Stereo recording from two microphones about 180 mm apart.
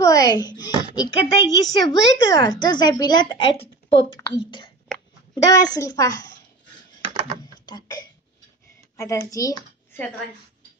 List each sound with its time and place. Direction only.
0.0 s a child's voice: 20° left (ahead or behind)
8.9 s a child's voice: 15° left (ahead or behind)